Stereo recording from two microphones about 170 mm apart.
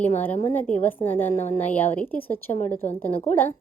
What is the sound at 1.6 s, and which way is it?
A woman's voice, 10° left (ahead or behind).